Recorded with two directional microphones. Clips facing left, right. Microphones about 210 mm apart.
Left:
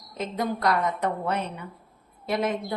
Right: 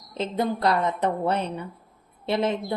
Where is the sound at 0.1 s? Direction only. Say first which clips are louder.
Right 3 dB; 30° right (ahead or behind).